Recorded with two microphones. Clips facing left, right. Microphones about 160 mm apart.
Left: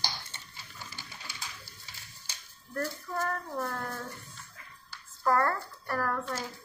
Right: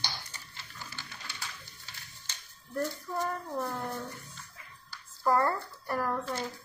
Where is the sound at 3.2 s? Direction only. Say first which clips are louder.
Even; 5° right (ahead or behind).